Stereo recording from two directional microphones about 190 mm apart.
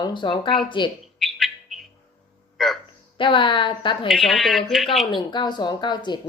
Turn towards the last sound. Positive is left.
turn(degrees=25)  # may be behind; listen again after turning